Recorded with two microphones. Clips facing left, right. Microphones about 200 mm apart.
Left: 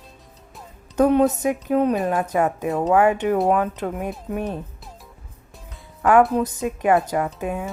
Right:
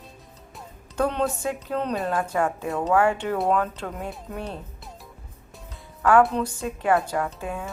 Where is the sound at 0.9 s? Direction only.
15° left (ahead or behind).